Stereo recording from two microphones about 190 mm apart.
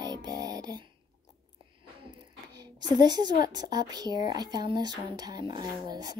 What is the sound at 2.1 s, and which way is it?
A woman's voice, 20° right (ahead or behind).